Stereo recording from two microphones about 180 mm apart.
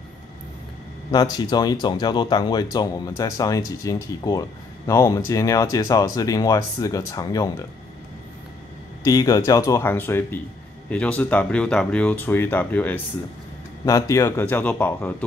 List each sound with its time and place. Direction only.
1.1 s speech: 25° left (ahead or behind)
9.0 s speech: 20° left (ahead or behind)